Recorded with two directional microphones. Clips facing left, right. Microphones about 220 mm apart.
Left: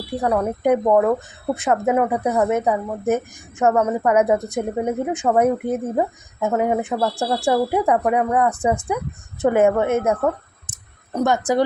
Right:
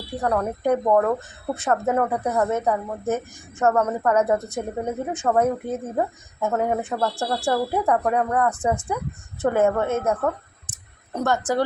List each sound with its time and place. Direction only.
0.2 s speech: 10° left (ahead or behind)